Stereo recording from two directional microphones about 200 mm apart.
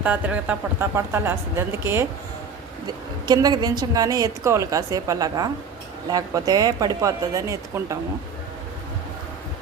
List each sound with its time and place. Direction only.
0.0 s a woman's voice: 5° right (ahead or behind)